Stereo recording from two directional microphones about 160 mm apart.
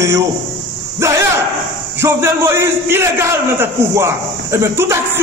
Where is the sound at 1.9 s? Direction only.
15° right (ahead or behind).